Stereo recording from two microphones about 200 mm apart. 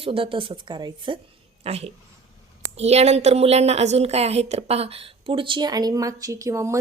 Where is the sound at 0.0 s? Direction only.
25° right (ahead or behind).